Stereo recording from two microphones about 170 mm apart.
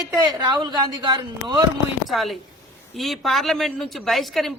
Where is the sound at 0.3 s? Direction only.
25° right (ahead or behind).